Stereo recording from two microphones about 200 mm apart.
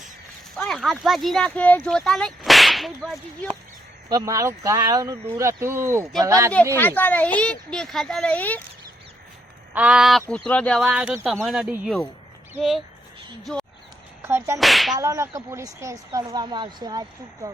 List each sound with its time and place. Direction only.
0.5 s speech: centre (ahead or behind)
4.1 s speech: 15° right (ahead or behind)
6.7 s speech: 10° left (ahead or behind)
9.7 s speech: 5° right (ahead or behind)
14.2 s a sound: 10° right (ahead or behind)
14.6 s speech: centre (ahead or behind)
14.9 s speech: 15° right (ahead or behind)